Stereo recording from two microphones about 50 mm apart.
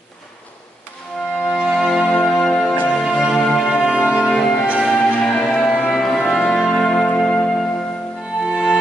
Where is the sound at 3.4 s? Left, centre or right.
Centre.